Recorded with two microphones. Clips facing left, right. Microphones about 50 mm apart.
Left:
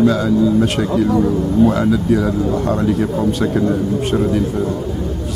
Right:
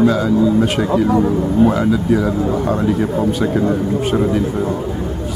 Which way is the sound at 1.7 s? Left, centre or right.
Centre.